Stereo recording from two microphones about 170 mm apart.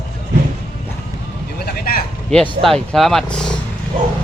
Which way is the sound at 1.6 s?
60° left (ahead or behind).